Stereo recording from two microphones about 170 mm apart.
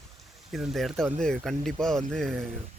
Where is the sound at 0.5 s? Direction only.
Centre (ahead or behind).